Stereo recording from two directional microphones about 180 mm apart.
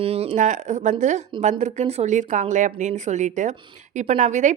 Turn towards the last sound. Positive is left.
turn(degrees=-45)  # may be behind; listen again after turning